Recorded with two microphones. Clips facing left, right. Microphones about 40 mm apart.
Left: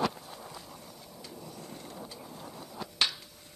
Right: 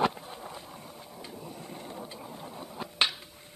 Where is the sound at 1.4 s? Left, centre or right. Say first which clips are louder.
Right 2 dB; right.